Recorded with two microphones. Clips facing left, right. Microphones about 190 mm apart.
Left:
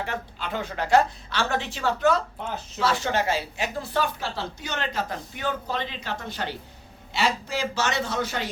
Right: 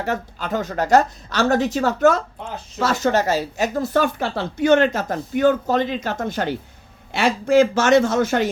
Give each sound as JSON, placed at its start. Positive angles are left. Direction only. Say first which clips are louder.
{"t": 0.0, "sound": "speech", "louder": "right 6 dB", "side_deg": -45}